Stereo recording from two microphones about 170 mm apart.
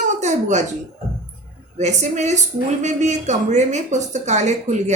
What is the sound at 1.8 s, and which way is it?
A woman's voice, 45° right (ahead or behind).